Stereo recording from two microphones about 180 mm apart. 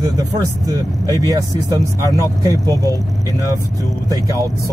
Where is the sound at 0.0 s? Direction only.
20° right (ahead or behind).